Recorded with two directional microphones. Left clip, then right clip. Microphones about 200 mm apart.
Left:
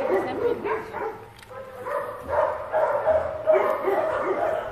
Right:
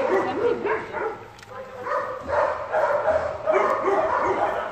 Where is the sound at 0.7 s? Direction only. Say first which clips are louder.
Right 2 dB; 40° left (ahead or behind).